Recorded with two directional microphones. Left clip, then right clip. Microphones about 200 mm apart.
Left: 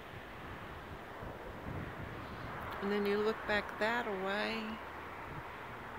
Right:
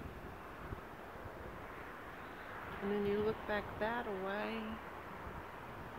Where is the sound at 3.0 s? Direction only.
15° left (ahead or behind).